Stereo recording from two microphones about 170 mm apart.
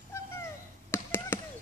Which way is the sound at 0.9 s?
15° left (ahead or behind).